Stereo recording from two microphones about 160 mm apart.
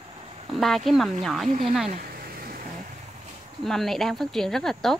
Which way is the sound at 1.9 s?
65° right (ahead or behind).